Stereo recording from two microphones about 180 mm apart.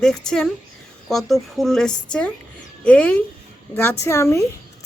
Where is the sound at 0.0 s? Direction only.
5° left (ahead or behind).